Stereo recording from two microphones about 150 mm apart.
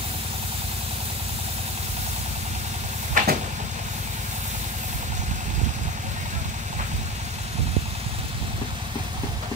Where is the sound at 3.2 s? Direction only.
60° right (ahead or behind).